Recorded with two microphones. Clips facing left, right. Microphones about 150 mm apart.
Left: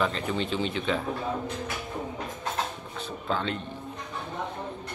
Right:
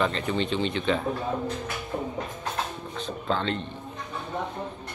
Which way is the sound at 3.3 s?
5° left (ahead or behind).